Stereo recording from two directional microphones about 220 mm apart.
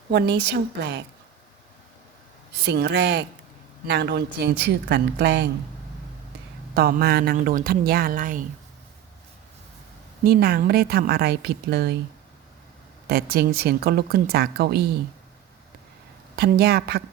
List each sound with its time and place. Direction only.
0.1 s a woman's voice: 50° right (ahead or behind)
2.6 s a woman's voice: 50° right (ahead or behind)
6.7 s speech: 45° right (ahead or behind)
10.2 s a woman's voice: 45° right (ahead or behind)
13.1 s a woman's voice: 45° right (ahead or behind)
16.3 s a woman's voice: 45° right (ahead or behind)